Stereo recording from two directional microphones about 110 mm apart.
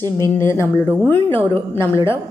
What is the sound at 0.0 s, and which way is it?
A woman's voice, 25° left (ahead or behind).